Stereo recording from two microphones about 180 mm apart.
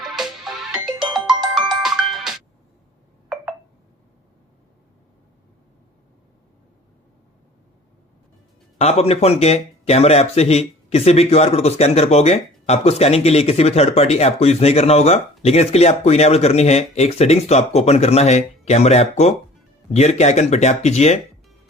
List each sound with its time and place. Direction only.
0.0 s music: centre (ahead or behind)
8.8 s speech: 35° left (ahead or behind)